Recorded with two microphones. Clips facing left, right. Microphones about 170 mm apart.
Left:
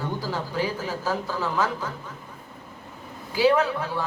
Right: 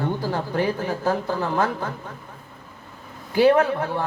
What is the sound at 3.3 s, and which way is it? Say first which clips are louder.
Speech: right 4 dB; 55° right (ahead or behind).